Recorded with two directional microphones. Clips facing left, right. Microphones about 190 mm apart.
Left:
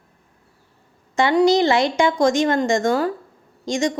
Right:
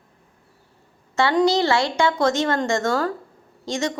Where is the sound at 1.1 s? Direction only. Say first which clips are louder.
Left 3 dB; 15° left (ahead or behind).